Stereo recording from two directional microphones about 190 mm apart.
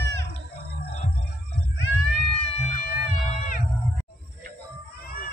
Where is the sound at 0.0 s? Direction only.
65° right (ahead or behind).